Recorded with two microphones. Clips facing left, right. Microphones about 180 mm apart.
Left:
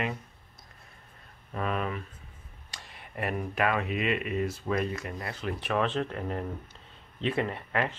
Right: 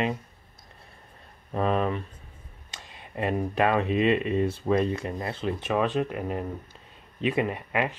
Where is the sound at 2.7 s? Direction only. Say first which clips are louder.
Right 4 dB; 20° right (ahead or behind).